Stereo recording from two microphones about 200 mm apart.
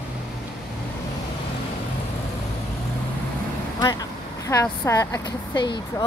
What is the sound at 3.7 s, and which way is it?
Speech, 20° left (ahead or behind).